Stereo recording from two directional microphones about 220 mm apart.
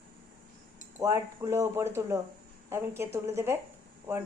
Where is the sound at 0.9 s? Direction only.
10° right (ahead or behind).